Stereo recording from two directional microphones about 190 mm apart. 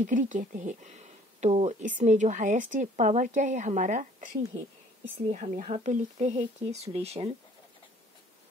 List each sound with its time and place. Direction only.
0.0 s speech: 45° right (ahead or behind)